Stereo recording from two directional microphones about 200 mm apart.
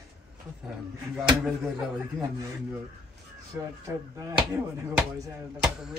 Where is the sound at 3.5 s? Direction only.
15° right (ahead or behind).